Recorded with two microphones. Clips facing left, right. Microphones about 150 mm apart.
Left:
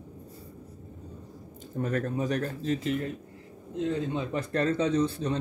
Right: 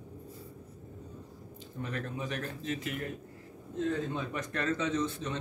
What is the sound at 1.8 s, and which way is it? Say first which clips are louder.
Speech: left 8 dB; 45° left (ahead or behind).